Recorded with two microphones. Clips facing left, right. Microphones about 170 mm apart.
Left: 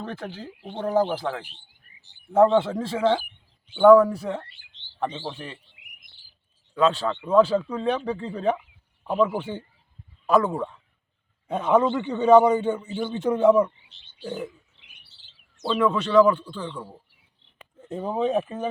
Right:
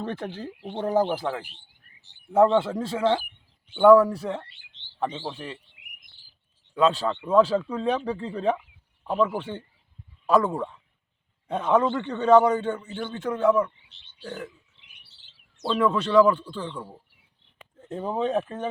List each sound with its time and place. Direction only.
0.1 s speech: 20° right (ahead or behind); by 5.5 s centre (ahead or behind)
6.7 s speech: 5° right (ahead or behind); by 13.7 s 20° left (ahead or behind)
13.9 s frog: 65° right (ahead or behind)
15.6 s speech: centre (ahead or behind)